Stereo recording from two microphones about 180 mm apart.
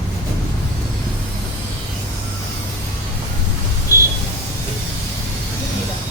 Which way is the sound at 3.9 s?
15° left (ahead or behind).